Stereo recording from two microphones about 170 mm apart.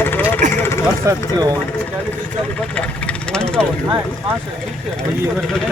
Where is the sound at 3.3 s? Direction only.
5° left (ahead or behind).